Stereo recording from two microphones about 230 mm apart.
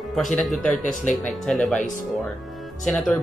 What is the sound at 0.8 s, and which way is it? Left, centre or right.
Speech, left.